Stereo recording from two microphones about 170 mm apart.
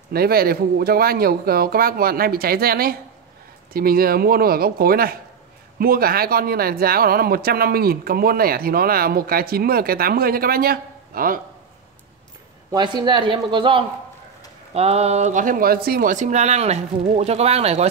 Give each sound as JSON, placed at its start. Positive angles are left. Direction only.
{"t": 0.1, "sound": "speech", "side_deg": -60}
{"t": 12.7, "sound": "speech", "side_deg": -25}